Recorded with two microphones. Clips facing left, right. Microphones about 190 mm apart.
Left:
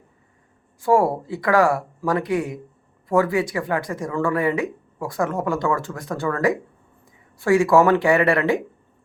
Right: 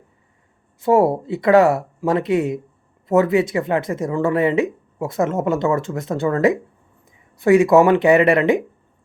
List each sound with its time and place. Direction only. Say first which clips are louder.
0.8 s speech: right 3 dB; 20° right (ahead or behind)